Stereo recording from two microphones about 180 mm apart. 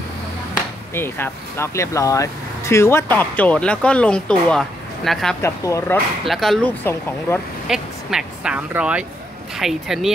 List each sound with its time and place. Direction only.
0.9 s speech: 10° left (ahead or behind)
5.4 s speech: 15° left (ahead or behind)
6.2 s speech: centre (ahead or behind)
7.6 s speech: centre (ahead or behind)